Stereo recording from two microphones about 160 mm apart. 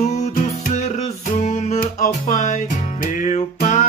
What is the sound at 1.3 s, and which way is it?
Music, 45° left (ahead or behind).